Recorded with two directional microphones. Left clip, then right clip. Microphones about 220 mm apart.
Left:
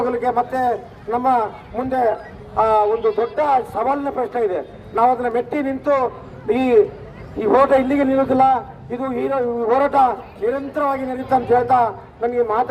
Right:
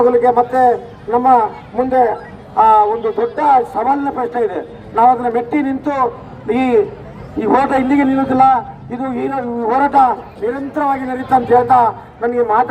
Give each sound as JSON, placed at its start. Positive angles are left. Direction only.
{"t": 0.0, "sound": "a man's voice", "side_deg": 25}